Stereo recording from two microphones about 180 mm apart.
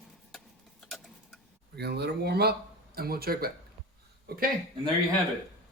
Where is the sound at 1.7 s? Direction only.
65° right (ahead or behind).